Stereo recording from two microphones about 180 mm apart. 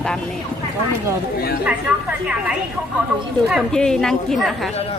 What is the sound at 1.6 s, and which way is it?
A woman's voice, 5° right (ahead or behind).